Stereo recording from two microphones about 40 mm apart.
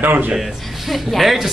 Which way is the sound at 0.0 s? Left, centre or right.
Right.